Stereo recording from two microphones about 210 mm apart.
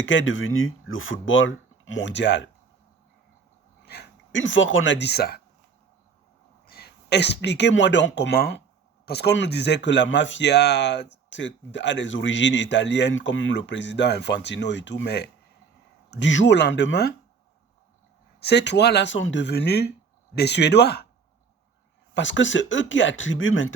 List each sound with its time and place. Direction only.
0.0 s speech: 65° left (ahead or behind)
3.8 s speech: 50° left (ahead or behind)
6.7 s speech: 45° left (ahead or behind)
18.3 s speech: 55° left (ahead or behind)
22.1 s speech: 60° left (ahead or behind)